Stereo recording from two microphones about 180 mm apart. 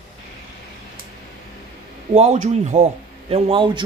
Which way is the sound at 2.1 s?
40° right (ahead or behind).